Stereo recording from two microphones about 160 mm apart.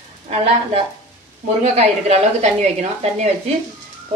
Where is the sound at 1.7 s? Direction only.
40° right (ahead or behind).